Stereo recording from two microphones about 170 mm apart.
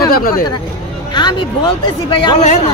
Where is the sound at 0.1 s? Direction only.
60° left (ahead or behind).